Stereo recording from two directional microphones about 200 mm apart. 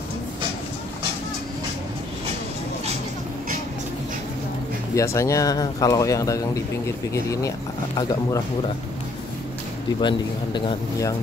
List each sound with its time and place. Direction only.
4.9 s speech: 15° left (ahead or behind)
9.9 s a man's voice: 25° left (ahead or behind)